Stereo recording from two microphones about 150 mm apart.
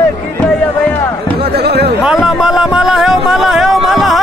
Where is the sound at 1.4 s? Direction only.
90° right.